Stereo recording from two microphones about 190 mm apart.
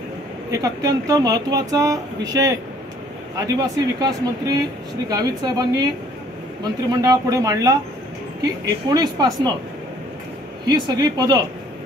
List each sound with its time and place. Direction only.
0.5 s speech: 20° right (ahead or behind)
6.9 s speech: 20° right (ahead or behind)
10.7 s speech: 20° right (ahead or behind)